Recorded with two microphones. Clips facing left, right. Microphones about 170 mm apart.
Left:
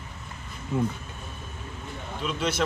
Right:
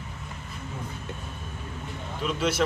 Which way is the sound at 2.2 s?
5° right (ahead or behind).